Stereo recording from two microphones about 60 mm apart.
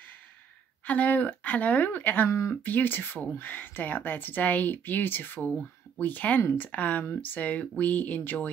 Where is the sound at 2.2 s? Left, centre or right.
Left.